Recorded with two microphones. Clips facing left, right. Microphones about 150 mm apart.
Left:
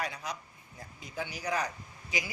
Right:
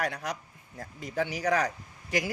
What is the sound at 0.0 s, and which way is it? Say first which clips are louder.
Speech: right 5 dB; 70° right (ahead or behind).